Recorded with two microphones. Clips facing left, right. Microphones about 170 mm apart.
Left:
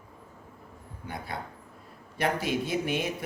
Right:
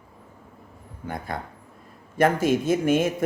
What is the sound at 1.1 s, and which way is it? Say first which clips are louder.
A man's voice: right 5 dB; 50° right (ahead or behind).